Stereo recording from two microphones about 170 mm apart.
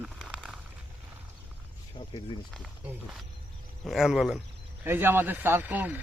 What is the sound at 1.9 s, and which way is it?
Speech, 25° left (ahead or behind).